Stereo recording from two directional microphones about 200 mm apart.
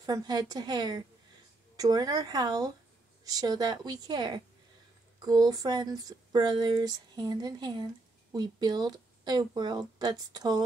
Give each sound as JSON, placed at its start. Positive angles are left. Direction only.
{"t": 0.0, "sound": "speech", "side_deg": -20}